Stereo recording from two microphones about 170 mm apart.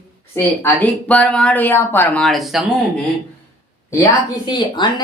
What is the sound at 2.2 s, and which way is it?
Speech, centre (ahead or behind).